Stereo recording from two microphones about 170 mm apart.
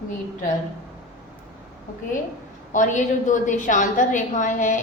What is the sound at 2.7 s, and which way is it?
A woman's voice, 50° left (ahead or behind).